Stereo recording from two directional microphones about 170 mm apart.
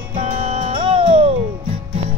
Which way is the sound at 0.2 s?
35° right (ahead or behind).